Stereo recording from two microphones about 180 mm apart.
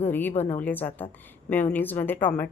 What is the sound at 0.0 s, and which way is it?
Speech, 10° left (ahead or behind).